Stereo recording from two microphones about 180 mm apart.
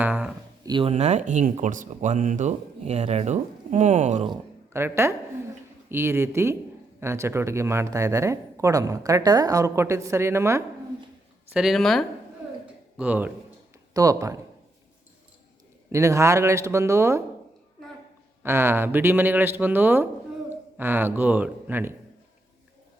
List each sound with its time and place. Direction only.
0.0 s speech: 10° right (ahead or behind)
0.6 s speech: 25° right (ahead or behind)
4.7 s speech: 15° right (ahead or behind)
11.5 s speech: centre (ahead or behind)
13.9 s speech: 20° right (ahead or behind)
15.9 s speech: 15° right (ahead or behind)
18.4 s speech: 15° right (ahead or behind)